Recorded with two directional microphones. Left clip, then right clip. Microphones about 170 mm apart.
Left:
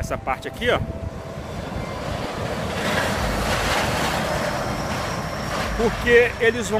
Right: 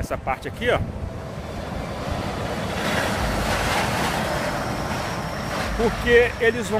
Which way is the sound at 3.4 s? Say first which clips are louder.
Left 1 dB; 40° left (ahead or behind).